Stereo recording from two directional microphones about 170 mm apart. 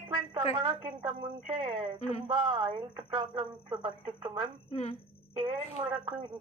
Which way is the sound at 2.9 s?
30° right (ahead or behind).